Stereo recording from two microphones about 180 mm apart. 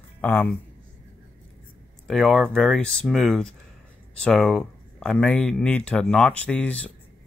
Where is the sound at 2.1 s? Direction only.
Centre (ahead or behind).